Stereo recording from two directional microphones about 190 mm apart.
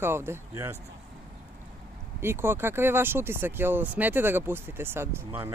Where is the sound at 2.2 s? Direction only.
10° right (ahead or behind).